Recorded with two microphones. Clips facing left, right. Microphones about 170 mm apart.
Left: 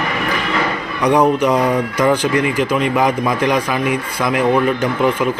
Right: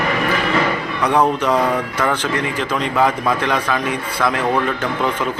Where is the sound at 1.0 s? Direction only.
15° left (ahead or behind).